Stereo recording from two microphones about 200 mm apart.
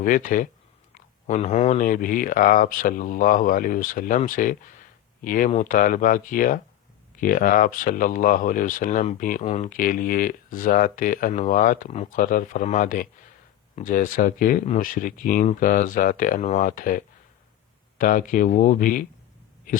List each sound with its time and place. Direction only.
0.0 s speech: 40° left (ahead or behind)